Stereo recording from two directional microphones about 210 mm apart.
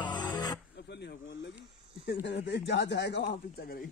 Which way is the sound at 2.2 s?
55° left (ahead or behind).